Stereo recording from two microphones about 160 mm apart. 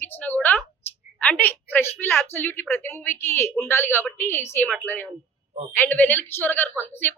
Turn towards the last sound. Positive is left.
turn(degrees=10)  # may be behind; listen again after turning